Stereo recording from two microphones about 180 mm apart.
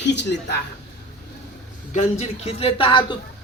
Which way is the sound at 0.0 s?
75° left (ahead or behind).